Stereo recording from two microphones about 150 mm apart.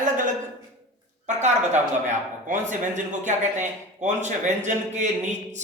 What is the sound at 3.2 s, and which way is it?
A man's voice, 55° right (ahead or behind).